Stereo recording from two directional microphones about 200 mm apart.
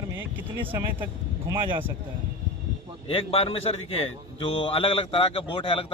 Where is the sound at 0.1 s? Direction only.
10° right (ahead or behind).